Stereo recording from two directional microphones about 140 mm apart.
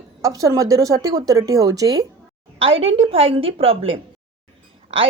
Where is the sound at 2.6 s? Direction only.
40° right (ahead or behind).